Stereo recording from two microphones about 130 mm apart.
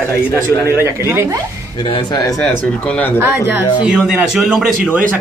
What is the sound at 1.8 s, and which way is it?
Speech, 35° left (ahead or behind).